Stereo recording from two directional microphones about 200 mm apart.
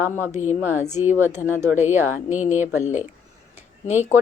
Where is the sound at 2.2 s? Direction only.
35° left (ahead or behind).